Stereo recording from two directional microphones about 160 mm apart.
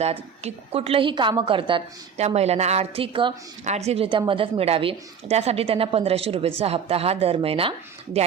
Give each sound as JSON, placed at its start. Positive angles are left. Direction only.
{"t": 0.0, "sound": "a woman's voice", "side_deg": -40}
{"t": 3.6, "sound": "a woman's voice", "side_deg": -45}